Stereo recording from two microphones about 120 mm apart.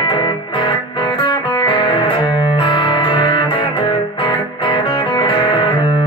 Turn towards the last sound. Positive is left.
turn(degrees=40)  # may be behind; listen again after turning